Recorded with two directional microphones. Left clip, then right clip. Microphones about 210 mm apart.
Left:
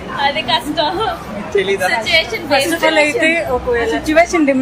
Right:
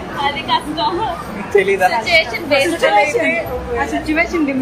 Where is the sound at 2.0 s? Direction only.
35° left (ahead or behind).